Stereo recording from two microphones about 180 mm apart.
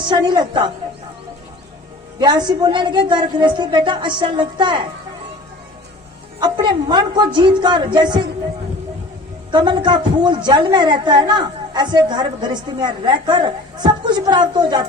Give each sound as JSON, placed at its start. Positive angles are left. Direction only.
{"t": 0.1, "sound": "a woman's voice", "side_deg": -25}
{"t": 2.1, "sound": "a woman's voice", "side_deg": -25}
{"t": 6.4, "sound": "a woman's voice", "side_deg": -25}
{"t": 9.5, "sound": "a woman's voice", "side_deg": -25}